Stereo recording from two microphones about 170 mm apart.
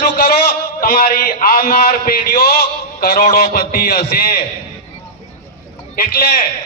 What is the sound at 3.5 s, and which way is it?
Speech, 70° left (ahead or behind).